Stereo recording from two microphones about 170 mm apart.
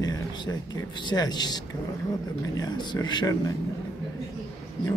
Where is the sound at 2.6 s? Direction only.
25° left (ahead or behind).